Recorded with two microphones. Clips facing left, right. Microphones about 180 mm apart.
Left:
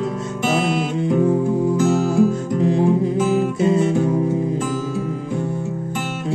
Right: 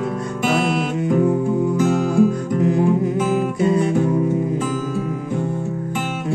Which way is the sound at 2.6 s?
25° left (ahead or behind).